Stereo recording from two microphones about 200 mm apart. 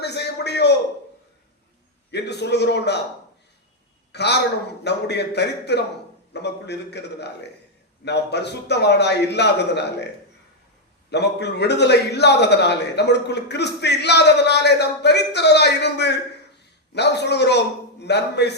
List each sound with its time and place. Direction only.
0.0 s a sound: 55° left (ahead or behind)
2.0 s a man's voice: 55° left (ahead or behind)
4.1 s a man's voice: 55° left (ahead or behind)
11.1 s a man's voice: 55° left (ahead or behind)